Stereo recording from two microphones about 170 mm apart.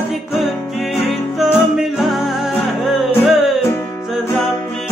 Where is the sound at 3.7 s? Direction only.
15° left (ahead or behind).